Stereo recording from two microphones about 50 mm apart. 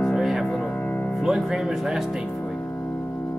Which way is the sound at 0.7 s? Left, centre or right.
Left.